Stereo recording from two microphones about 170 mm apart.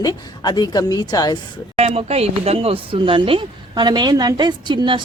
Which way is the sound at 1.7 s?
35° right (ahead or behind).